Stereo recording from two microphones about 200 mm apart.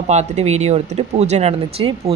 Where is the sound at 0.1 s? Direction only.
35° right (ahead or behind).